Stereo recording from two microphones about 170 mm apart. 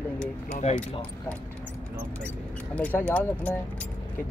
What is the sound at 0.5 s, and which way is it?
Speech, 50° left (ahead or behind).